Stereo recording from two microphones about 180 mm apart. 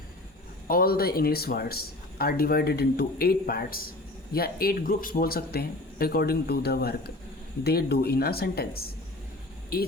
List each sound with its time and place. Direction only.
0.7 s speech: 55° left (ahead or behind)